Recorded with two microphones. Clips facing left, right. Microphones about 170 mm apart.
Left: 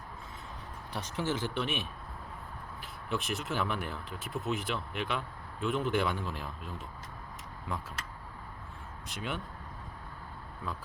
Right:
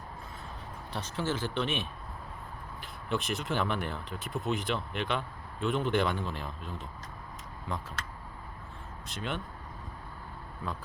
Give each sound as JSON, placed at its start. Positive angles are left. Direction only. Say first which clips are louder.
{"t": 0.9, "sound": "speech", "louder": "even", "side_deg": 15}
{"t": 3.1, "sound": "speech", "louder": "right 2 dB", "side_deg": 0}
{"t": 9.0, "sound": "speech", "louder": "right 2 dB", "side_deg": 10}